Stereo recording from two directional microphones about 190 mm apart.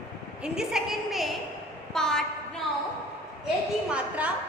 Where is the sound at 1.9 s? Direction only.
5° left (ahead or behind).